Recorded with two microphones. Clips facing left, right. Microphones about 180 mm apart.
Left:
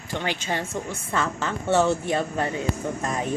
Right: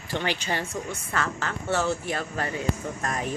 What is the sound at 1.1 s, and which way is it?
A woman's voice, 20° left (ahead or behind).